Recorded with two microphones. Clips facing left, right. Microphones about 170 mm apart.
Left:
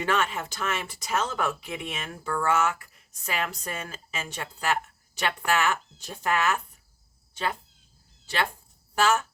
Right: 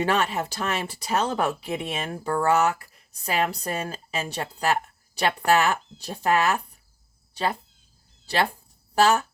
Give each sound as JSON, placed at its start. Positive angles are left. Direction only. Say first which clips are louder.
{"t": 0.0, "sound": "speech", "louder": "right 3 dB", "side_deg": -35}
{"t": 9.0, "sound": "speech", "louder": "right 4 dB", "side_deg": -35}